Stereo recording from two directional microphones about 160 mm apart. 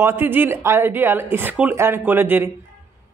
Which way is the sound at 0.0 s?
15° right (ahead or behind).